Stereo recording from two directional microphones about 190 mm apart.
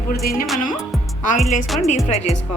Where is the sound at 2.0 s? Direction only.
35° left (ahead or behind).